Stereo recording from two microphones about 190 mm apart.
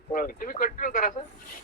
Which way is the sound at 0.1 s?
45° left (ahead or behind).